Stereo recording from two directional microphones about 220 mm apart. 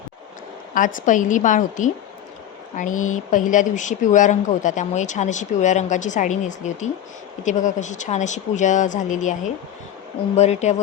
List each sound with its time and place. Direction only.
0.9 s speech: 35° left (ahead or behind)
10.3 s speech: 30° left (ahead or behind)